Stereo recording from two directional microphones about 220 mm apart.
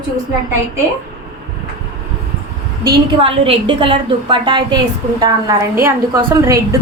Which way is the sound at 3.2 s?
25° right (ahead or behind).